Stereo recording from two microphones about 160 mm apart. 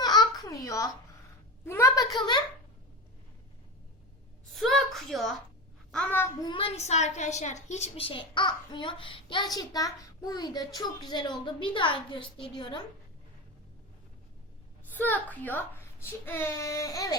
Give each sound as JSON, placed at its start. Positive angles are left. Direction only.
{"t": 0.0, "sound": "a sound", "side_deg": 25}
{"t": 1.6, "sound": "a child's voice", "side_deg": 15}
{"t": 4.5, "sound": "a woman's voice", "side_deg": 0}
{"t": 6.4, "sound": "a woman's voice", "side_deg": 30}
{"t": 14.8, "sound": "a child's voice", "side_deg": 10}